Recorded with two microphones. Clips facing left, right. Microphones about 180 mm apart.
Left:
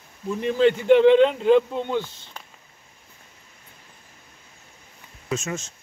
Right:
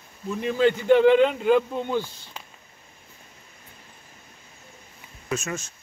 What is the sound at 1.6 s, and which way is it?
Speech, 5° right (ahead or behind).